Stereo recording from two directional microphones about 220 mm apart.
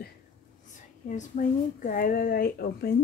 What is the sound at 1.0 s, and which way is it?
Speech, 35° left (ahead or behind).